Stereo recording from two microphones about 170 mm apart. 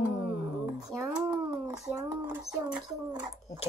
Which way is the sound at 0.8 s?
5° right (ahead or behind).